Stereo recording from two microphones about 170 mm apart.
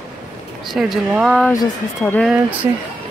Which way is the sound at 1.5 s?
15° left (ahead or behind).